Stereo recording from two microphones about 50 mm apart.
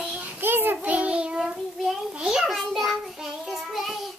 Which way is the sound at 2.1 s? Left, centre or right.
Centre.